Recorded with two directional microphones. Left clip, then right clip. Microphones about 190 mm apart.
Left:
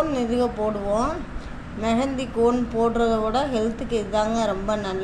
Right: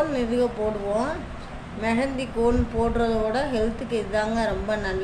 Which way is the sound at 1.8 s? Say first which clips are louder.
Left 1 dB; 15° left (ahead or behind).